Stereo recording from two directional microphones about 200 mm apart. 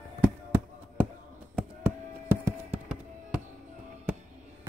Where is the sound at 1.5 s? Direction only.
5° right (ahead or behind).